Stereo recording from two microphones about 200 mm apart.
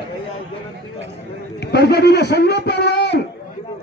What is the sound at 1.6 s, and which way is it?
A man's voice, 55° left (ahead or behind).